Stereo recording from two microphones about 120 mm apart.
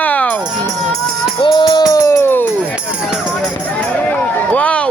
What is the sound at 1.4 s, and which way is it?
Speech, 45° left (ahead or behind).